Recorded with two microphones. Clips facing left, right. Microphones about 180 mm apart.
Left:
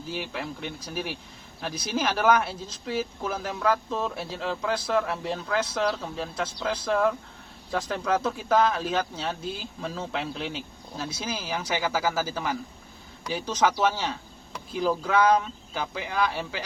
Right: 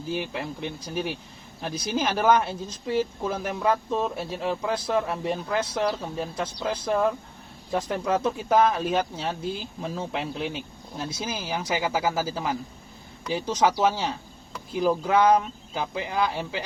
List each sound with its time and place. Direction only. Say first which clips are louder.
0.1 s speech: right 3 dB; 20° right (ahead or behind)